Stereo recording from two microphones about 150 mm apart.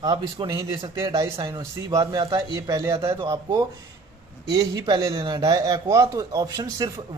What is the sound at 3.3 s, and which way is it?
Speech, 25° right (ahead or behind).